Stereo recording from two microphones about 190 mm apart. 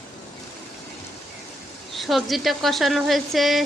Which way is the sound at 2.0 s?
Centre (ahead or behind).